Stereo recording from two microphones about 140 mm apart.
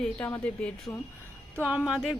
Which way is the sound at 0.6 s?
5° left (ahead or behind).